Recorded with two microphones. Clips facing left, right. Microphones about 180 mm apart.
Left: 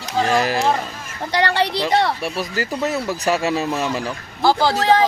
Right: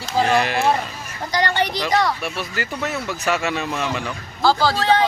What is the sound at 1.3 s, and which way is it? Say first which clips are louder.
Speech: left 2 dB; 30° left (ahead or behind).